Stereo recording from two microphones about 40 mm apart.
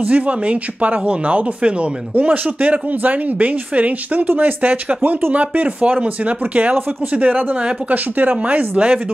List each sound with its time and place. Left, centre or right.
0.0 s speech: right
2.2 s speech: right
4.3 s speech: right
4.6 s speech: right